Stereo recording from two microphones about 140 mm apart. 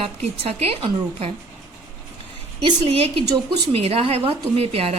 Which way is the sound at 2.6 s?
40° right (ahead or behind).